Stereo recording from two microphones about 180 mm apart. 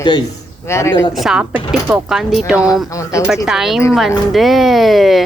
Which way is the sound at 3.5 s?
Centre (ahead or behind).